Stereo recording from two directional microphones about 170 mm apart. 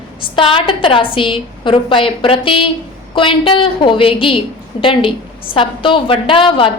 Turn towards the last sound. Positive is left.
turn(degrees=30)  # may be behind; listen again after turning